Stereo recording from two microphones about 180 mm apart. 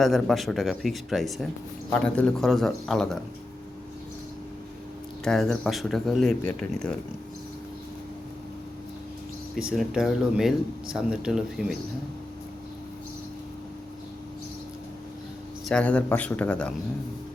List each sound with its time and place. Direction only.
0.0 s speech: centre (ahead or behind)
5.2 s speech: centre (ahead or behind)
9.6 s speech: 5° right (ahead or behind)
15.7 s speech: 5° left (ahead or behind)